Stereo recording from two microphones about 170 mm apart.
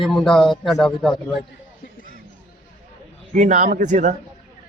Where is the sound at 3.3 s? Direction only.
50° right (ahead or behind).